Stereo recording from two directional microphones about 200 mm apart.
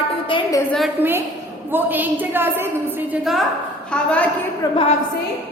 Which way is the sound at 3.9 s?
5° left (ahead or behind).